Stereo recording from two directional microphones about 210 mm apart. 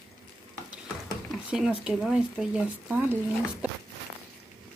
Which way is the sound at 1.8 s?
5° right (ahead or behind).